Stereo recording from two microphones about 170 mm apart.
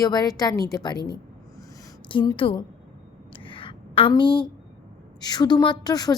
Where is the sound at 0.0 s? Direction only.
20° left (ahead or behind).